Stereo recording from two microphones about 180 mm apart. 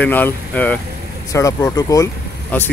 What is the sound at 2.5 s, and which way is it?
Speech, 10° left (ahead or behind).